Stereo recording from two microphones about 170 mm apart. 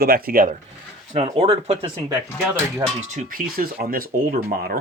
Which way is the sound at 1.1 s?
35° right (ahead or behind).